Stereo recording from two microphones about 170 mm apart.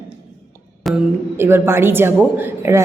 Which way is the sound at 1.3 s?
15° right (ahead or behind).